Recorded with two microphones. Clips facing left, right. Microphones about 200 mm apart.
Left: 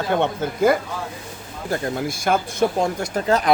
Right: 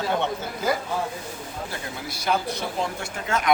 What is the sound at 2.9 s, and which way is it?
Speech, 40° left (ahead or behind).